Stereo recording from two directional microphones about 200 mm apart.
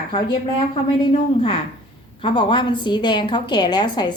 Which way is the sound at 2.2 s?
25° left (ahead or behind).